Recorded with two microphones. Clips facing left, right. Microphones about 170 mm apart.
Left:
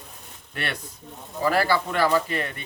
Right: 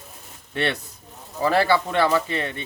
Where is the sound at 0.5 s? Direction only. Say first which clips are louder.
Right 7 dB; 25° right (ahead or behind).